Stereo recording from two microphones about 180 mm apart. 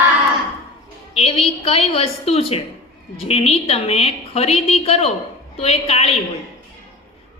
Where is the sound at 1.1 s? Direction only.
35° left (ahead or behind).